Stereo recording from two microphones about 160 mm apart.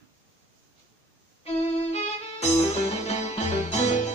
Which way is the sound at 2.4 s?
40° left (ahead or behind).